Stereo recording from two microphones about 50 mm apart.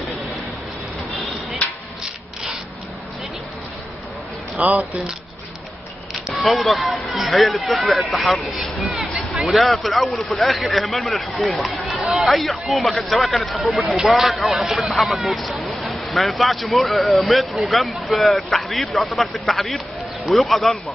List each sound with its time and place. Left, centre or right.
4.6 s speech: right
6.4 s speech: centre
8.8 s a sound: centre
9.5 s speech: centre